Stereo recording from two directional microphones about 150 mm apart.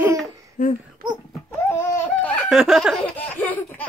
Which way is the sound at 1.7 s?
15° left (ahead or behind).